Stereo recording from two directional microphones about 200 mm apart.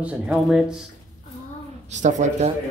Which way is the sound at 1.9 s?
35° right (ahead or behind).